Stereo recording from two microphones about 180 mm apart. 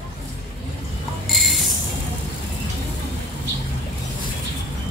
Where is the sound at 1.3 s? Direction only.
Centre (ahead or behind).